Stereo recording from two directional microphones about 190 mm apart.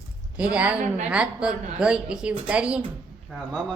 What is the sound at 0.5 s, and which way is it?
A woman's voice, 5° right (ahead or behind).